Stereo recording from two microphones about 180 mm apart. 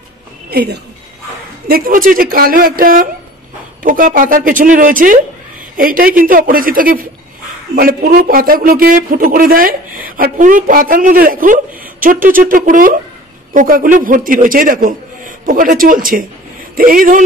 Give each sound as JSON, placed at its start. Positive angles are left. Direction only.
{"t": 0.5, "sound": "a woman's voice", "side_deg": -55}